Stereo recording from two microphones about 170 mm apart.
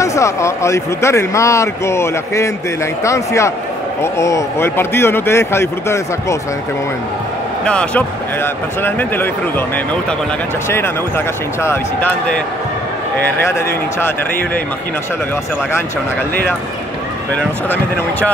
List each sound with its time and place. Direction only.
0.0 s speech: 20° left (ahead or behind)
7.6 s speech: 5° left (ahead or behind)
10.7 s speech: 15° left (ahead or behind)
13.4 s speech: 15° left (ahead or behind)